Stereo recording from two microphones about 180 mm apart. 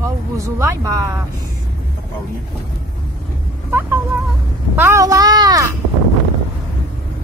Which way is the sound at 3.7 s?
10° right (ahead or behind).